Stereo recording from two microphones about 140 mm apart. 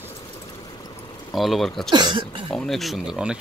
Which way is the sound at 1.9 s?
35° right (ahead or behind).